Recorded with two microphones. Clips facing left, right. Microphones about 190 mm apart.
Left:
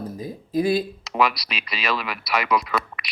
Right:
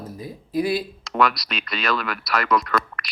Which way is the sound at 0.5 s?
45° left (ahead or behind).